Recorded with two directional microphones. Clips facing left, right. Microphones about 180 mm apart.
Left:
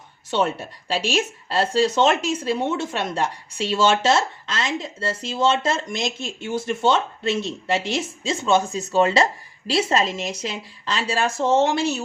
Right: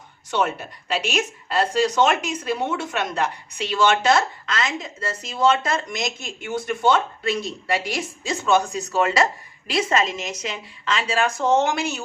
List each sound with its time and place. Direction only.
0.3 s a woman's voice: 30° left (ahead or behind)